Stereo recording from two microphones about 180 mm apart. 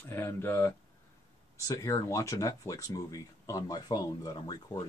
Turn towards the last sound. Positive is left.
turn(degrees=20)  # may be behind; listen again after turning